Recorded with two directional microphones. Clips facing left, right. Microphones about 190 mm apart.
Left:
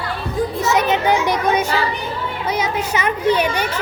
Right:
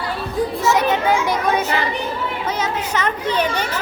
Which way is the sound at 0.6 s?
20° left (ahead or behind).